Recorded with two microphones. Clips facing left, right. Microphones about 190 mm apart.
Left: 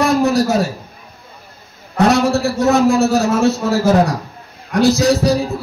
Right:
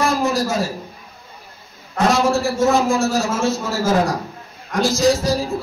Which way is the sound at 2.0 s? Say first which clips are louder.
Left 2 dB; 65° left (ahead or behind).